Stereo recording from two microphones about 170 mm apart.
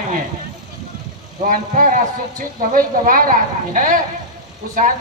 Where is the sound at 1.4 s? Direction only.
50° right (ahead or behind).